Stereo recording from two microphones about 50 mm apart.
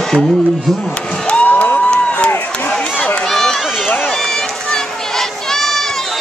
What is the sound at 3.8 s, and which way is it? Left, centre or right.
Run, left.